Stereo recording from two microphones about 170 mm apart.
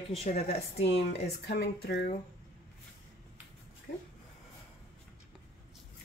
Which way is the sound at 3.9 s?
65° left (ahead or behind).